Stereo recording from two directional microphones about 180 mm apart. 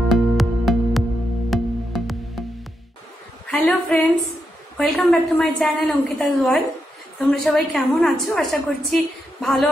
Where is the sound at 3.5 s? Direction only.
5° left (ahead or behind).